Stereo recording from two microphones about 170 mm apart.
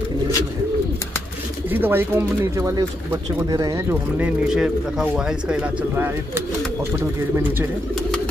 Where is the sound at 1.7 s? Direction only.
10° right (ahead or behind).